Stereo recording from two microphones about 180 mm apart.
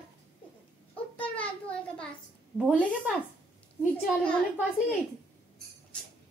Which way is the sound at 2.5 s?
5° right (ahead or behind).